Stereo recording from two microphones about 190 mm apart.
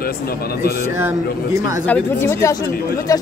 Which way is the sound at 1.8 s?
10° left (ahead or behind).